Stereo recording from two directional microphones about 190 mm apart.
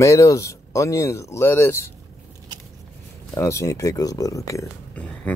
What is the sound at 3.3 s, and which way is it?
Speech, 15° left (ahead or behind).